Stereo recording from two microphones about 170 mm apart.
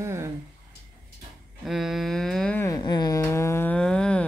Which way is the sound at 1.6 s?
Centre (ahead or behind).